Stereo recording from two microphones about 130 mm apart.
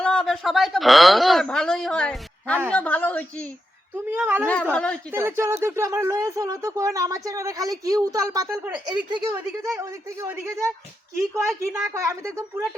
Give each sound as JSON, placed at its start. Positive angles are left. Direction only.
{"t": 0.0, "sound": "a woman's voice", "side_deg": 5}
{"t": 3.9, "sound": "a woman's voice", "side_deg": -15}
{"t": 4.7, "sound": "a woman's voice", "side_deg": 10}
{"t": 5.1, "sound": "speech", "side_deg": -20}
{"t": 8.6, "sound": "a woman's voice", "side_deg": -10}
{"t": 9.6, "sound": "speech", "side_deg": -25}